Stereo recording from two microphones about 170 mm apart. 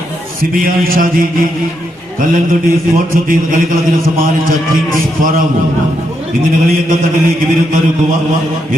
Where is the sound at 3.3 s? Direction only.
55° right (ahead or behind).